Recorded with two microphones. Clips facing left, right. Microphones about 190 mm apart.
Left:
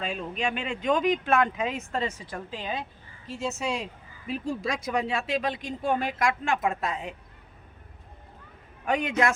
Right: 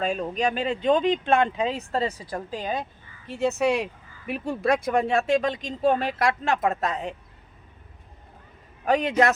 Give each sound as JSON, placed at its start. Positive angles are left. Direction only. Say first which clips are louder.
{"t": 0.0, "sound": "speech", "louder": "right 5 dB", "side_deg": -45}
{"t": 3.2, "sound": "speech", "louder": "right 8 dB", "side_deg": -60}
{"t": 8.8, "sound": "speech", "louder": "right 4 dB", "side_deg": -35}